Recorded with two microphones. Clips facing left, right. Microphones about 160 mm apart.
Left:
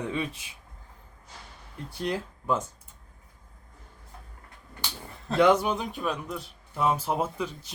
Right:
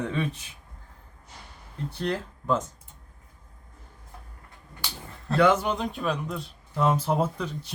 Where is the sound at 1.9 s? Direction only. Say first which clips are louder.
Right 1 dB; 10° left (ahead or behind).